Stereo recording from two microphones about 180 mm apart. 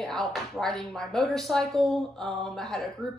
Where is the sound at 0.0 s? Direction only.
Centre (ahead or behind).